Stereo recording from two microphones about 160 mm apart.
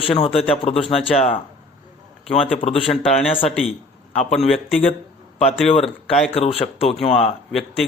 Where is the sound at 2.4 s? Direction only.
35° left (ahead or behind).